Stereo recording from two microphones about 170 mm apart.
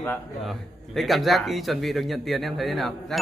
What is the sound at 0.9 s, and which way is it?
Speech, centre (ahead or behind).